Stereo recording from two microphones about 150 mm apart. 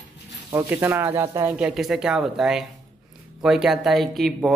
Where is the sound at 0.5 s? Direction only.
15° right (ahead or behind).